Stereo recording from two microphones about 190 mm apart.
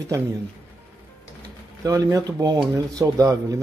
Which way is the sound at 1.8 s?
20° right (ahead or behind).